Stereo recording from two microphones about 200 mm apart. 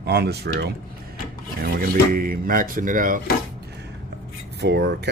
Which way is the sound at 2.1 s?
45° right (ahead or behind).